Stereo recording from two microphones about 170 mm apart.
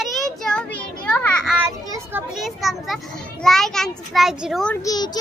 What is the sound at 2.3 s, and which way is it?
A child's voice, centre (ahead or behind).